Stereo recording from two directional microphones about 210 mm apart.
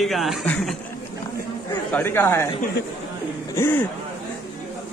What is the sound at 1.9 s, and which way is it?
Speech, 10° left (ahead or behind).